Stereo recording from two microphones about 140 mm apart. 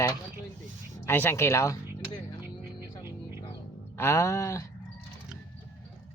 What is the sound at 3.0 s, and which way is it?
Music, 15° right (ahead or behind).